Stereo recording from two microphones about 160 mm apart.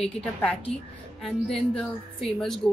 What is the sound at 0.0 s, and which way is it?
A woman's voice, 5° left (ahead or behind).